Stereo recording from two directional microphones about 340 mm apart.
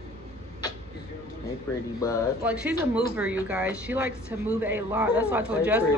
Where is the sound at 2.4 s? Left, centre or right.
Centre.